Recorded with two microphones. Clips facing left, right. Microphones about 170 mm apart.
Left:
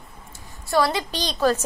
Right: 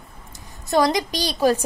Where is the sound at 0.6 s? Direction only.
20° right (ahead or behind).